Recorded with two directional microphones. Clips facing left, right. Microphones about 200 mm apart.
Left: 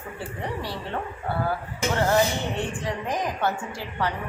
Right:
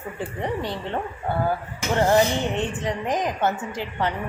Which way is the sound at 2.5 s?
20° right (ahead or behind).